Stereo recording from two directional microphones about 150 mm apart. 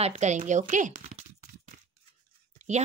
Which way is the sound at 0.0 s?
50° right (ahead or behind).